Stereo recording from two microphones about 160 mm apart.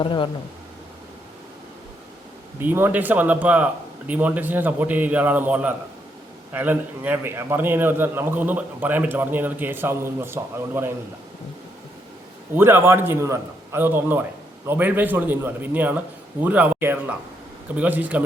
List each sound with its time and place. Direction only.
0.0 s speech: 30° left (ahead or behind)
2.6 s a man's voice: 10° right (ahead or behind)
12.5 s a man's voice: 15° right (ahead or behind)